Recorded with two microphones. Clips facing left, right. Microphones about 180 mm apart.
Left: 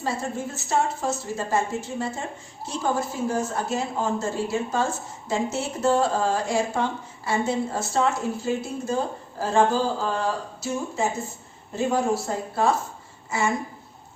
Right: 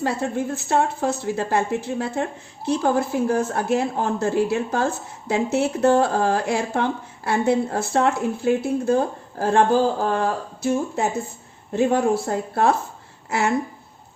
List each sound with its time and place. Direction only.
0.0 s a woman's voice: 60° right (ahead or behind)